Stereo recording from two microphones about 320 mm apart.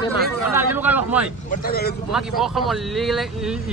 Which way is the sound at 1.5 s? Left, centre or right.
Left.